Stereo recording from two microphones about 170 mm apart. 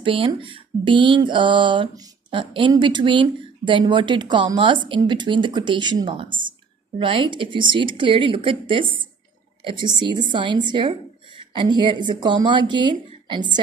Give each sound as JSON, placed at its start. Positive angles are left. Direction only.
{"t": 0.0, "sound": "speech", "side_deg": -30}